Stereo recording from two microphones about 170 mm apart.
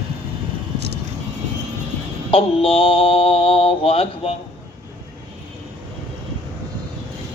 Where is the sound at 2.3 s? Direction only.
35° left (ahead or behind).